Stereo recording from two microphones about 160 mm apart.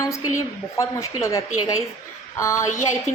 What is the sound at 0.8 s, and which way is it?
A woman's voice, 20° left (ahead or behind).